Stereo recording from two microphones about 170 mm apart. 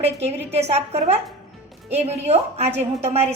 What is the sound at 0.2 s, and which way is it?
A woman's voice, 40° right (ahead or behind).